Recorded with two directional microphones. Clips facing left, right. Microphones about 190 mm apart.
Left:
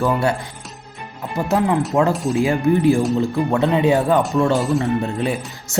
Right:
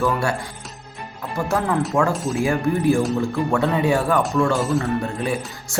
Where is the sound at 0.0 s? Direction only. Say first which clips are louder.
Left 3 dB; 20° left (ahead or behind).